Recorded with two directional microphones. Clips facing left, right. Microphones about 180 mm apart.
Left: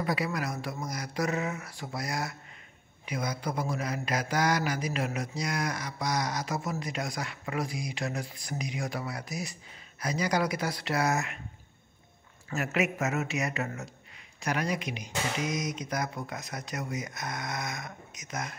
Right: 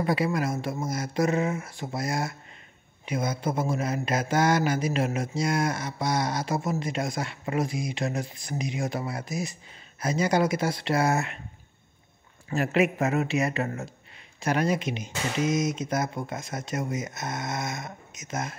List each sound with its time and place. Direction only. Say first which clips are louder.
0.0 s mantra: right 5 dB; 25° right (ahead or behind)
12.4 s a man's voice: right 6 dB; 30° right (ahead or behind)
14.4 s mantra: right 6 dB; 30° right (ahead or behind)